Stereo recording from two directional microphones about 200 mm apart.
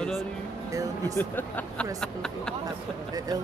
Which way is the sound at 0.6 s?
15° right (ahead or behind).